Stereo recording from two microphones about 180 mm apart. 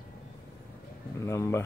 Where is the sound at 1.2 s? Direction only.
15° left (ahead or behind).